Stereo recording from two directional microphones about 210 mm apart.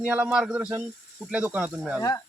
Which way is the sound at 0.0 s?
5° right (ahead or behind).